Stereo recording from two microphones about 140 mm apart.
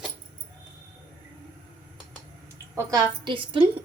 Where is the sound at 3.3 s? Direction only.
40° right (ahead or behind).